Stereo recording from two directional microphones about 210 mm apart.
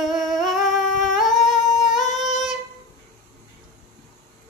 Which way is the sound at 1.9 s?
35° left (ahead or behind).